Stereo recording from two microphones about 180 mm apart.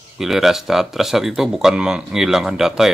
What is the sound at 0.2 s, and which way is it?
Speech, centre (ahead or behind).